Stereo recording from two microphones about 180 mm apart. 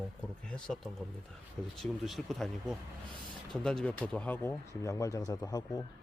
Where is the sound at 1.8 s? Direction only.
Centre (ahead or behind); by 5.8 s 20° left (ahead or behind).